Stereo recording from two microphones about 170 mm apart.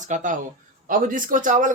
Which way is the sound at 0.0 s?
45° right (ahead or behind).